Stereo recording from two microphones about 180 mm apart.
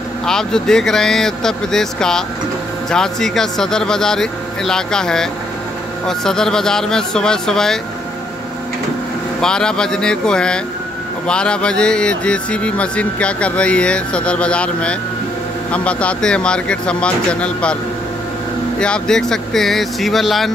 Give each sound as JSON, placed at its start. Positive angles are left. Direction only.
{"t": 0.3, "sound": "a man's voice", "side_deg": 5}
{"t": 9.4, "sound": "a man's voice", "side_deg": 5}
{"t": 18.8, "sound": "a man's voice", "side_deg": 5}